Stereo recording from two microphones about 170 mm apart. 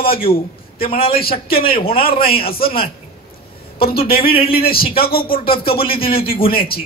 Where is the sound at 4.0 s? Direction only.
60° left (ahead or behind).